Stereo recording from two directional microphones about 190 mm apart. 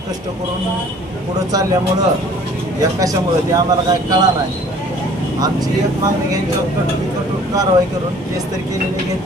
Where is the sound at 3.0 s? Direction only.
20° right (ahead or behind).